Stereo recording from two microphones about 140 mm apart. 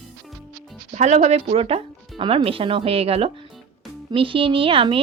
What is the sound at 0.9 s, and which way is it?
Speech, 55° right (ahead or behind).